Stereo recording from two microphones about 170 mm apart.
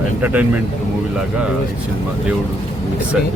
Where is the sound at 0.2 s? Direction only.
10° right (ahead or behind).